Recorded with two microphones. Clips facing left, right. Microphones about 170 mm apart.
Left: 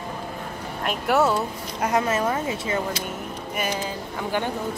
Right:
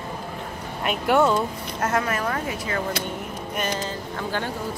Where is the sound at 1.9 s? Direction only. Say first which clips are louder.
Left 3 dB; 20° left (ahead or behind).